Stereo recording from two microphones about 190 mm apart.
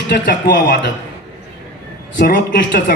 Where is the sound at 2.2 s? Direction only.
50° left (ahead or behind).